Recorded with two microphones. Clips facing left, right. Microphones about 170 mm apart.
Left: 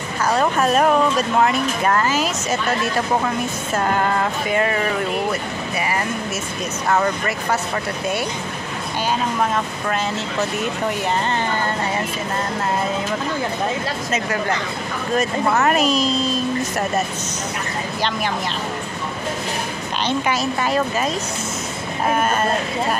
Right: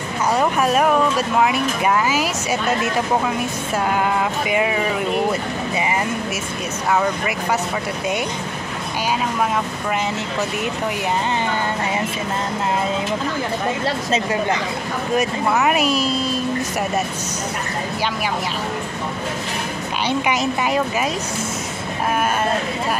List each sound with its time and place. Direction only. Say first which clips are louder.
0.3 s speech: even; 10° right (ahead or behind)
6.9 s speech: even; 5° right (ahead or behind)
13.8 s speech: right 3 dB; 30° right (ahead or behind)
15.5 s speech: even; 10° right (ahead or behind)
20.1 s speech: right 1 dB; 15° right (ahead or behind)